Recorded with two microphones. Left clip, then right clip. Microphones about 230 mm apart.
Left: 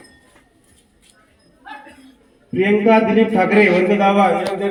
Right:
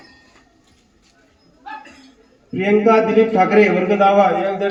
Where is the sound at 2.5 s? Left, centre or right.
Left.